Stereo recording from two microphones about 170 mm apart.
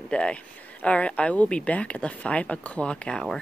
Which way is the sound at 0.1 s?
5° left (ahead or behind).